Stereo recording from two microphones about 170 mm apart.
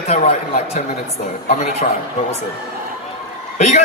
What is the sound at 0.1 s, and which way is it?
A man's voice, 40° left (ahead or behind).